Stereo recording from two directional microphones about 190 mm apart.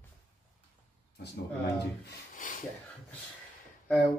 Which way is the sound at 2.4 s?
45° left (ahead or behind).